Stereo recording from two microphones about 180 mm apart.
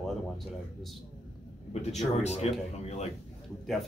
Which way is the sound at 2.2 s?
35° left (ahead or behind).